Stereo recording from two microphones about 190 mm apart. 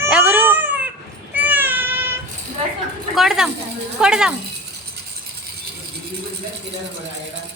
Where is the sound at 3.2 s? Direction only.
Centre (ahead or behind).